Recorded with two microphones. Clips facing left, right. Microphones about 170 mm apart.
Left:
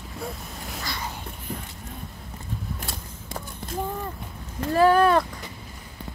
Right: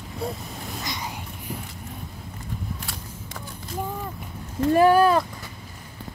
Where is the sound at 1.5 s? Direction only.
10° right (ahead or behind).